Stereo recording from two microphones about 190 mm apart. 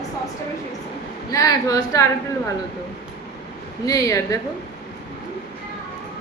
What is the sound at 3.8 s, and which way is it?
Speech, 15° left (ahead or behind).